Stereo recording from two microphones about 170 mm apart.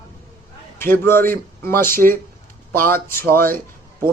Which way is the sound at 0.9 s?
15° left (ahead or behind).